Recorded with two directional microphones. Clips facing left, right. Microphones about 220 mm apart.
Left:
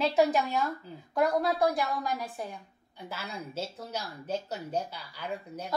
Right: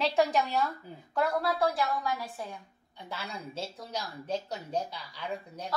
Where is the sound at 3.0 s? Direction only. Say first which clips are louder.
Left 1 dB; 5° left (ahead or behind).